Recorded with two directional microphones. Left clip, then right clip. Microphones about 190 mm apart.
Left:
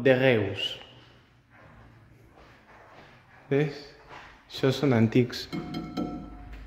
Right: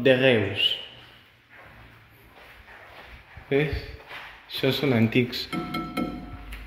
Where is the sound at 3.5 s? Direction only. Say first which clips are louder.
Right 3 dB; 20° left (ahead or behind).